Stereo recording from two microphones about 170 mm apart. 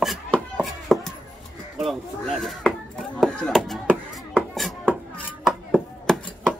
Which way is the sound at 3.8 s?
10° right (ahead or behind).